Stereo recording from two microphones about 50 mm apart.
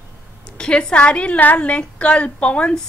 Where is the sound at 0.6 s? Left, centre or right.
Centre.